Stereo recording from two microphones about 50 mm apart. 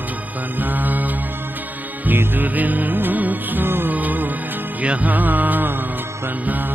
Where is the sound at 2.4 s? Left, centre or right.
Right.